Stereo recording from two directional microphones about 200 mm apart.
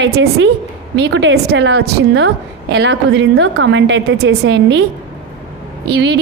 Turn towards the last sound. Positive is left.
turn(degrees=-55)  # may be behind; listen again after turning